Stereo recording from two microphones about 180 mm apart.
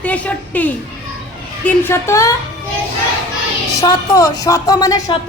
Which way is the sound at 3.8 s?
20° left (ahead or behind).